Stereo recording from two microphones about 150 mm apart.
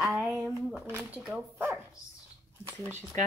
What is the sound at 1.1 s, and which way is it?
Speech, 10° right (ahead or behind).